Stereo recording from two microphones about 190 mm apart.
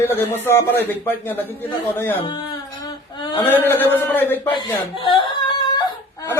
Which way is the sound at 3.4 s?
10° left (ahead or behind).